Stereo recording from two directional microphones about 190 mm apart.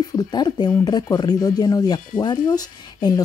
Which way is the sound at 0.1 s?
20° left (ahead or behind).